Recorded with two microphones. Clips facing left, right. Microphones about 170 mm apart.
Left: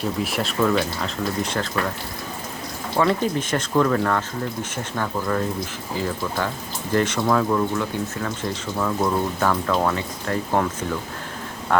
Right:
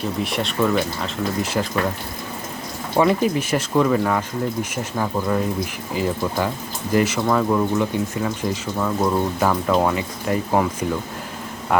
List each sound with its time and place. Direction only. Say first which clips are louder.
0.2 s speech: right 2 dB; centre (ahead or behind)
2.9 s speech: right 3 dB; 15° right (ahead or behind)